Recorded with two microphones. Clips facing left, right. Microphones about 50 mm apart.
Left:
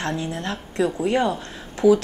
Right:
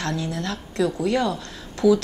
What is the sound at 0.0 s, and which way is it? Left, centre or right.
A woman's voice, left.